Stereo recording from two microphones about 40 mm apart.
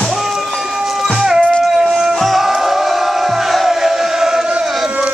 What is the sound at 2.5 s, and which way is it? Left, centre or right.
Crowd, centre.